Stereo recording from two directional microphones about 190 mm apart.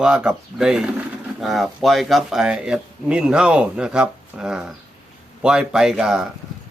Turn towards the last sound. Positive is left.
turn(degrees=0)  # may be behind; listen again after turning